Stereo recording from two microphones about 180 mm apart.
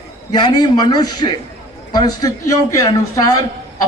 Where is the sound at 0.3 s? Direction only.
25° left (ahead or behind).